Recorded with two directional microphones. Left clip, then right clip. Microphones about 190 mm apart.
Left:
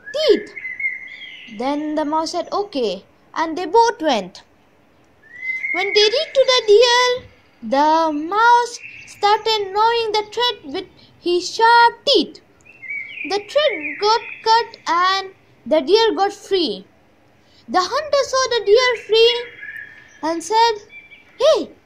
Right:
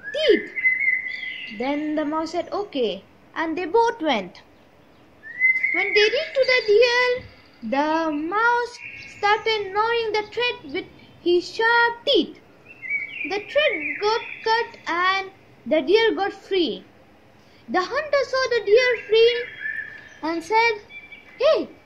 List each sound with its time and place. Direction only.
0.1 s whistling: 30° left (ahead or behind)
1.6 s a woman's voice: 30° left (ahead or behind)
5.8 s a child's voice: 35° left (ahead or behind)
21.4 s bird: 35° left (ahead or behind)